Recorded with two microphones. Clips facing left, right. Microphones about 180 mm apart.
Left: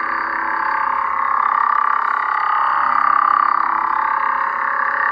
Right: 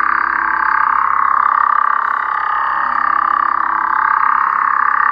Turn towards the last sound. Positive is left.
turn(degrees=30)  # may be behind; listen again after turning